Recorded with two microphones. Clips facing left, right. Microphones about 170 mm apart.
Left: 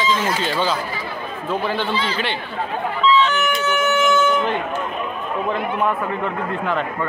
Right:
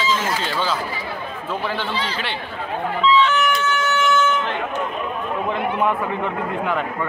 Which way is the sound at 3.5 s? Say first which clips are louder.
Left 1 dB; 25° left (ahead or behind).